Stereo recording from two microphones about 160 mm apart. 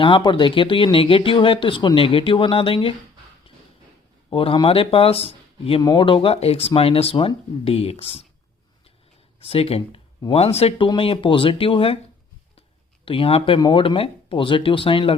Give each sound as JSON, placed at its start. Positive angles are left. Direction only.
{"t": 0.0, "sound": "speech", "side_deg": 30}
{"t": 4.3, "sound": "speech", "side_deg": 35}
{"t": 9.4, "sound": "speech", "side_deg": 40}
{"t": 13.1, "sound": "speech", "side_deg": 35}